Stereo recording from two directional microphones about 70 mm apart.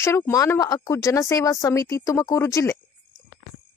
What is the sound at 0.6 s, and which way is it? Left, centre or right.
A woman's voice, left.